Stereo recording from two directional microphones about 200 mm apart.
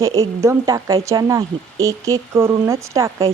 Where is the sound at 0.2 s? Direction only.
15° right (ahead or behind).